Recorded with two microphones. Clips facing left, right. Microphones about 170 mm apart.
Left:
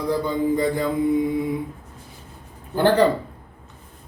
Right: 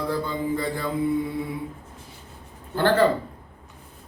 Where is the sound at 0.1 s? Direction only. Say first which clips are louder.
Left 5 dB; 15° left (ahead or behind).